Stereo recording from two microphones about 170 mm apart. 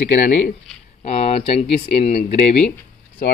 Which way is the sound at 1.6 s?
40° left (ahead or behind).